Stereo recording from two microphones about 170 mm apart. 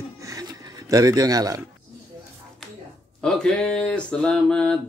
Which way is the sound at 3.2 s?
5° left (ahead or behind).